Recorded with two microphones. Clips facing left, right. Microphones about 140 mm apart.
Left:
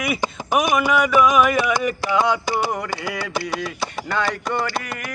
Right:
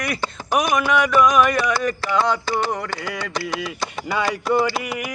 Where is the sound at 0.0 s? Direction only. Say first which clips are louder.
Left 2 dB; 10° left (ahead or behind).